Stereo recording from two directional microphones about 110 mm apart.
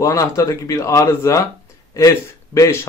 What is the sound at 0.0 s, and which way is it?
Speech, 30° left (ahead or behind).